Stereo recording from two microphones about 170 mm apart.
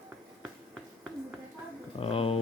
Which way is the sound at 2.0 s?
35° left (ahead or behind).